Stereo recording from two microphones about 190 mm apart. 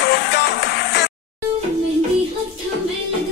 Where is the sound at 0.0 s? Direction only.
60° left (ahead or behind).